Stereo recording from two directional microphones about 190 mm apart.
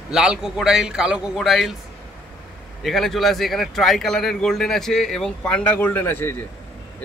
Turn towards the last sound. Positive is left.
turn(degrees=10)  # may be behind; listen again after turning